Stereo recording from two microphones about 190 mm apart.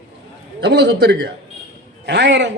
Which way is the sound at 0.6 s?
60° right (ahead or behind).